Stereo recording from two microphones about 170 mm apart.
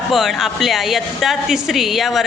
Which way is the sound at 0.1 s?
Centre (ahead or behind).